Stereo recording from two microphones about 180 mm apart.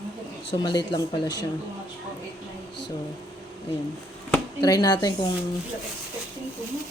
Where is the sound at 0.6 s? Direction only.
25° left (ahead or behind).